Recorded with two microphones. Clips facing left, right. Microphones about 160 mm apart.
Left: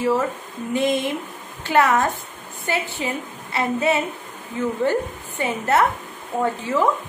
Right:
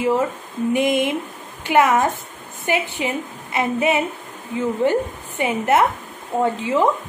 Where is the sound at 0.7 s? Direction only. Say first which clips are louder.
Right 1 dB; 15° right (ahead or behind).